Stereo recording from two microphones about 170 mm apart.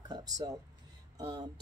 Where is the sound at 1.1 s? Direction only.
25° right (ahead or behind).